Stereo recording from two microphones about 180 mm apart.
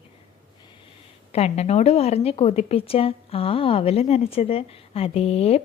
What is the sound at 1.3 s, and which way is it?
A woman's voice, 35° left (ahead or behind).